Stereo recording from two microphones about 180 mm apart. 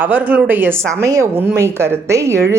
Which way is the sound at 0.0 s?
10° right (ahead or behind).